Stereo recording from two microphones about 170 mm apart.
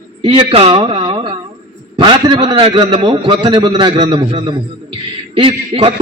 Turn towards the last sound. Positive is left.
turn(degrees=-30)  # may be behind; listen again after turning